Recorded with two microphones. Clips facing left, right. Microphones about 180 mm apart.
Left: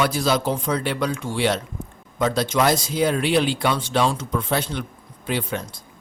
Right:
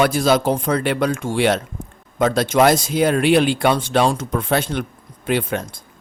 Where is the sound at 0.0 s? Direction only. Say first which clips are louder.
Right 5 dB; 55° right (ahead or behind).